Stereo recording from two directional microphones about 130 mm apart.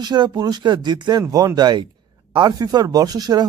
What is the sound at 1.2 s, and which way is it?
Speech, 25° right (ahead or behind).